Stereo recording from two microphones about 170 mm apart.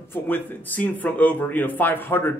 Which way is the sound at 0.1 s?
10° left (ahead or behind).